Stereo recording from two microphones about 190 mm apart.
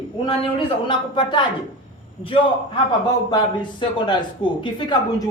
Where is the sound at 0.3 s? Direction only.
25° left (ahead or behind).